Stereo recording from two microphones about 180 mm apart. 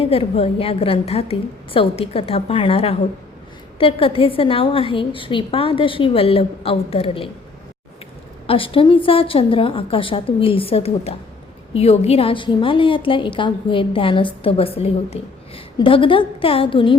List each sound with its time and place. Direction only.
0.0 s a woman's voice: 35° left (ahead or behind)
8.4 s a woman's voice: 30° left (ahead or behind)